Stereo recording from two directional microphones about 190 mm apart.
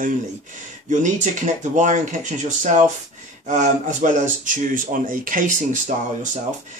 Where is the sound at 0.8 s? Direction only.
40° right (ahead or behind).